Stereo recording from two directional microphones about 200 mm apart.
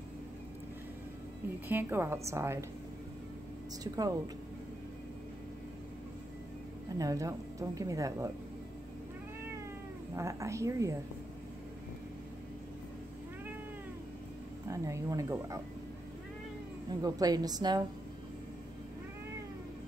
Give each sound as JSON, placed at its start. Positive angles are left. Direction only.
{"t": 1.7, "sound": "a woman's voice", "side_deg": -10}
{"t": 3.8, "sound": "a woman's voice", "side_deg": -20}
{"t": 7.0, "sound": "a woman's voice", "side_deg": -15}
{"t": 10.1, "sound": "a woman's voice", "side_deg": -15}
{"t": 14.7, "sound": "a woman's voice", "side_deg": -15}
{"t": 17.0, "sound": "a woman's voice", "side_deg": -20}